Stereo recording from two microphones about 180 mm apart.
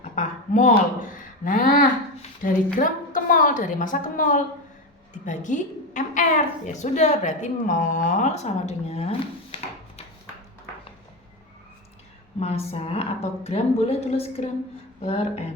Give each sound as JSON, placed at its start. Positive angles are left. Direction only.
{"t": 0.2, "sound": "a sound", "side_deg": 45}
{"t": 1.5, "sound": "a woman's voice", "side_deg": 50}
{"t": 12.4, "sound": "a woman's voice", "side_deg": 35}